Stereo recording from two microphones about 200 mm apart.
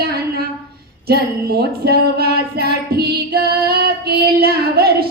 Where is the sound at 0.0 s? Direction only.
50° right (ahead or behind).